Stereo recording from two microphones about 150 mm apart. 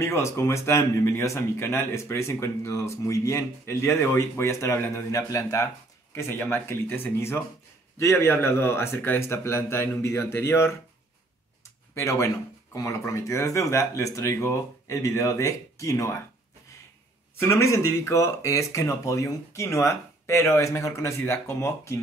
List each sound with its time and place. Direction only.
0.0 s a man's voice: 20° left (ahead or behind)
11.9 s a man's voice: 20° left (ahead or behind)
17.4 s a man's voice: 15° left (ahead or behind)